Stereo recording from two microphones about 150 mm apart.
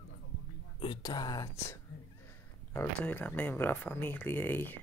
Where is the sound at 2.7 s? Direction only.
10° left (ahead or behind).